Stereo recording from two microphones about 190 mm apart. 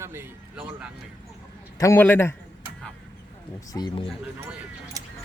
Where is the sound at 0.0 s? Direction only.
10° right (ahead or behind).